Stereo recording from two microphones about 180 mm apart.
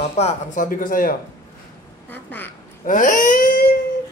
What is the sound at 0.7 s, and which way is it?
Speech, 50° left (ahead or behind).